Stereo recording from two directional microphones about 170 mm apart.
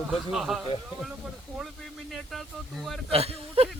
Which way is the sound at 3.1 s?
35° right (ahead or behind).